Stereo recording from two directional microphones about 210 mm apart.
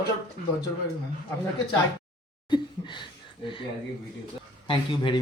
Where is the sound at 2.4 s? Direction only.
20° left (ahead or behind).